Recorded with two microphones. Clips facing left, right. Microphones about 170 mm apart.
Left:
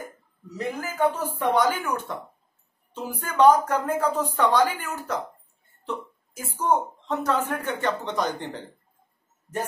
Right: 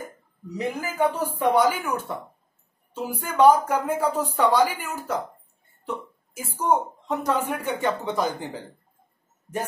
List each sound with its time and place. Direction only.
0.6 s a woman's voice: 15° right (ahead or behind)